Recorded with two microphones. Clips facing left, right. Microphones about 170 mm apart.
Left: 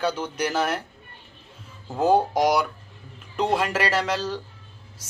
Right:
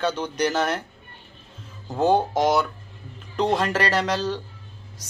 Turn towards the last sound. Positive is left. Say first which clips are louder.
# right 1 dB
turn(degrees=0)  # may be behind; listen again after turning